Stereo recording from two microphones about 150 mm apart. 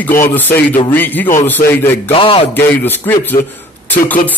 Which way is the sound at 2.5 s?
15° left (ahead or behind).